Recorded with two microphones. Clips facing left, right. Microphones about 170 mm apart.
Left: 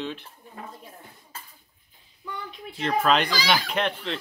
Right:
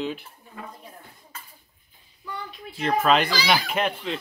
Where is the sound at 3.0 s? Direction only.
5° right (ahead or behind).